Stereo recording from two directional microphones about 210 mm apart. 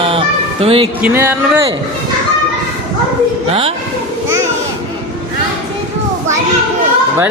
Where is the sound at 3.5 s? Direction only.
25° right (ahead or behind).